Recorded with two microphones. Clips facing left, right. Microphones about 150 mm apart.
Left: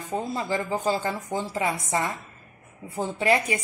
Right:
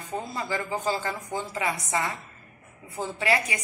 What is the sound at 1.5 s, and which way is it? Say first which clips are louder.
Speech: left 2 dB; 40° left (ahead or behind).